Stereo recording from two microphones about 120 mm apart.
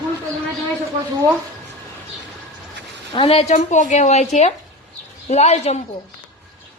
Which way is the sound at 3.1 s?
50° left (ahead or behind).